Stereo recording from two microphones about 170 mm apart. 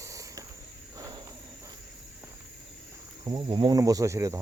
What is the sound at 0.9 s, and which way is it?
Cricket, 20° right (ahead or behind).